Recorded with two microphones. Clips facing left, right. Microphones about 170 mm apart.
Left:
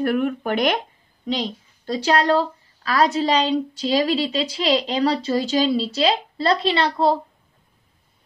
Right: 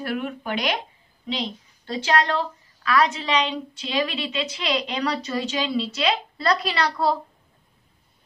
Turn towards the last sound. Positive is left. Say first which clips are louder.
# left 4 dB
turn(degrees=25)  # may be behind; listen again after turning